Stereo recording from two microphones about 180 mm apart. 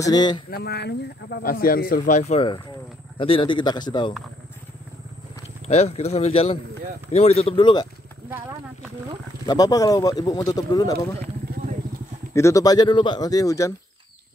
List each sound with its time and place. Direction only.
0.0 s speech: 25° left (ahead or behind)
0.5 s speech: 60° left (ahead or behind); by 4.1 s 25° left (ahead or behind)
5.7 s speech: 35° left (ahead or behind)
8.3 s speech: 10° right (ahead or behind)
9.5 s speech: 20° left (ahead or behind)
12.4 s speech: 15° left (ahead or behind)